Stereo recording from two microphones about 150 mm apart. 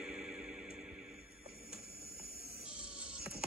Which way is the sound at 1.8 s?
90° right.